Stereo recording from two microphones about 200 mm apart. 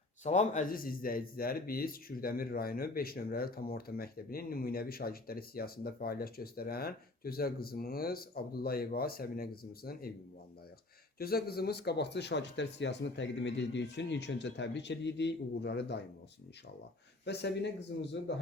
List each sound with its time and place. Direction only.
0.3 s speech: 35° left (ahead or behind)
11.2 s speech: 50° left (ahead or behind)
17.2 s speech: 55° left (ahead or behind)